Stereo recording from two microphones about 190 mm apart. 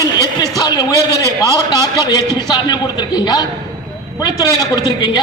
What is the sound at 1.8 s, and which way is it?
A man's voice, 20° left (ahead or behind).